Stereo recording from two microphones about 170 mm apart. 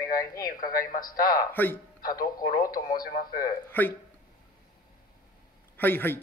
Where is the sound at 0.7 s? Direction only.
55° left (ahead or behind).